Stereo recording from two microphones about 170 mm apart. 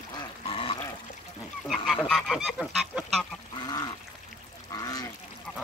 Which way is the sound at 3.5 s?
25° left (ahead or behind).